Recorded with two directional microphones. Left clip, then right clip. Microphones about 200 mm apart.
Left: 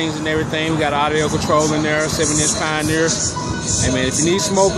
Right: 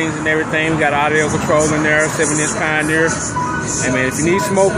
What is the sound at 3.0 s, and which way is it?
Music, 5° left (ahead or behind).